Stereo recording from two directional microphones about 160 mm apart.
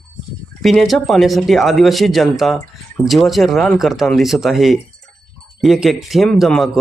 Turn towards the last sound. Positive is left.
turn(degrees=0)  # may be behind; listen again after turning